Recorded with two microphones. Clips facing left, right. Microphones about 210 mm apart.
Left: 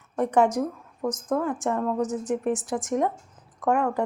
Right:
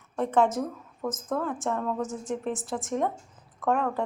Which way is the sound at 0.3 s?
15° left (ahead or behind).